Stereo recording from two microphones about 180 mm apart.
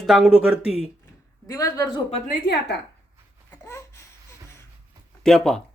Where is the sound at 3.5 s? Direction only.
15° left (ahead or behind).